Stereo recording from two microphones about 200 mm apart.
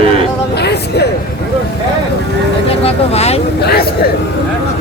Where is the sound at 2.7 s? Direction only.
30° left (ahead or behind).